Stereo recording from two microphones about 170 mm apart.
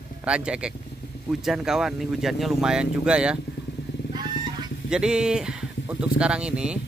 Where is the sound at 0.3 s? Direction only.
5° right (ahead or behind).